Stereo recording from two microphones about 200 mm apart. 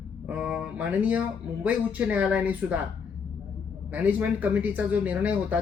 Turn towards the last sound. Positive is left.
turn(degrees=-10)  # may be behind; listen again after turning